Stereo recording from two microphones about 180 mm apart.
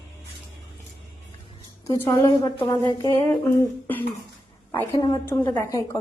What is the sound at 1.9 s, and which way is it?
A woman's voice, 15° left (ahead or behind).